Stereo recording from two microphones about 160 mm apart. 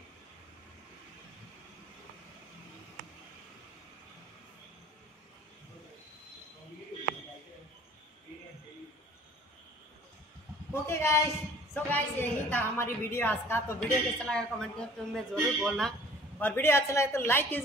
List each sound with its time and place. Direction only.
10.7 s a woman's voice: 15° left (ahead or behind); by 15.9 s centre (ahead or behind)
16.3 s a woman's voice: 10° left (ahead or behind)